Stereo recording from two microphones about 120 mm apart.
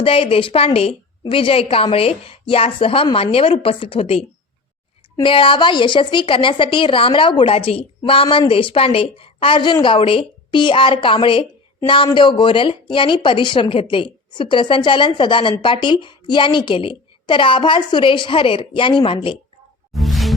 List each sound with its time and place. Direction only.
0.0 s a woman's voice: 50° left (ahead or behind)
19.9 s music: centre (ahead or behind)